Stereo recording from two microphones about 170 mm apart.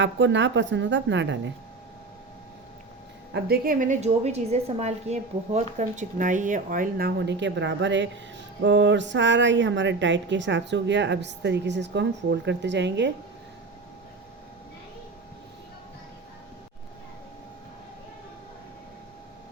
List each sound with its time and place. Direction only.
0.0 s speech: 90° right
3.3 s a woman's voice: 65° right (ahead or behind); by 13.1 s 90° right